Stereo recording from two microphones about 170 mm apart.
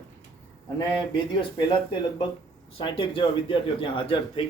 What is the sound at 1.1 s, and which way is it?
A man's voice, 30° left (ahead or behind).